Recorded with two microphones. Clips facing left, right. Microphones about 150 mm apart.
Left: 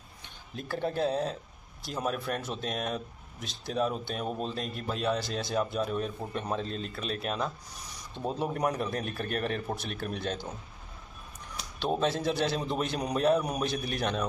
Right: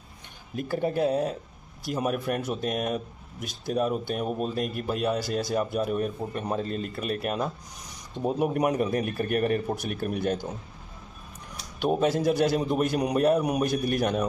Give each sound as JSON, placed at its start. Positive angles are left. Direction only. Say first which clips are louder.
{"t": 0.6, "sound": "speech", "louder": "right 5 dB", "side_deg": -10}
{"t": 11.8, "sound": "speech", "louder": "right 5 dB", "side_deg": -10}